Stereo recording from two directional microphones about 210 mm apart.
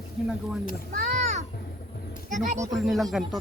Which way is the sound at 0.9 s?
35° right (ahead or behind).